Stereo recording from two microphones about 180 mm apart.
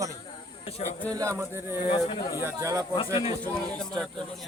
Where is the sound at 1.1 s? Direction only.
20° right (ahead or behind).